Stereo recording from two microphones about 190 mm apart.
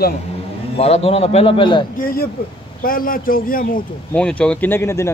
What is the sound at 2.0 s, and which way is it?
A man's voice, 50° left (ahead or behind).